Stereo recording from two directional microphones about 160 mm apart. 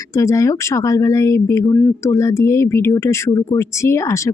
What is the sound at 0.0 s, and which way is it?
Speech, 20° left (ahead or behind).